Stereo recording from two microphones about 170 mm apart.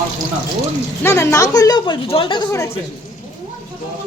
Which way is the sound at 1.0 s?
15° left (ahead or behind).